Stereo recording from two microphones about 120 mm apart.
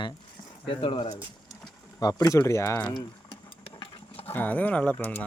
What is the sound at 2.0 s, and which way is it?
Speech, 30° left (ahead or behind).